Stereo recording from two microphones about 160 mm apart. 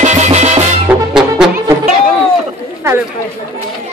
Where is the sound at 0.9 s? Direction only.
10° right (ahead or behind).